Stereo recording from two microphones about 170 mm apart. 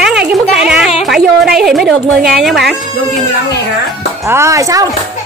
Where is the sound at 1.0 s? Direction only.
Centre (ahead or behind).